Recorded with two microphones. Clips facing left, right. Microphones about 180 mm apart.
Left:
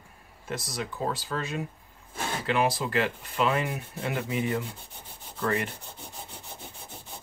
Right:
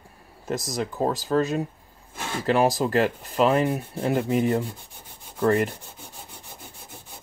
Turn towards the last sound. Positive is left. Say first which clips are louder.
# right 8 dB
turn(degrees=-40)  # may be behind; listen again after turning